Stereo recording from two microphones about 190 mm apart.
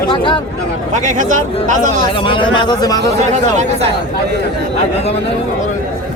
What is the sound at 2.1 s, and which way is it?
Speech, 25° left (ahead or behind).